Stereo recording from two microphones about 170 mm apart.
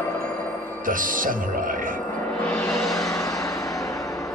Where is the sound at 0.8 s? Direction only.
55° right (ahead or behind).